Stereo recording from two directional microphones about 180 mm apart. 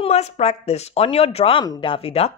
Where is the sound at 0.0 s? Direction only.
35° left (ahead or behind).